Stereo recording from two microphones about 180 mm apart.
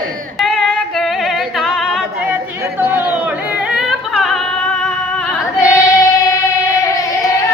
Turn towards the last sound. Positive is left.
turn(degrees=15)  # may be behind; listen again after turning